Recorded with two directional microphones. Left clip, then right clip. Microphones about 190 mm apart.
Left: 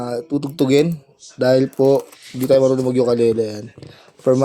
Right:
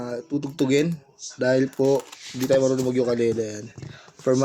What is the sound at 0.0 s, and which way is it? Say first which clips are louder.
A man's voice: left 6 dB; 25° left (ahead or behind).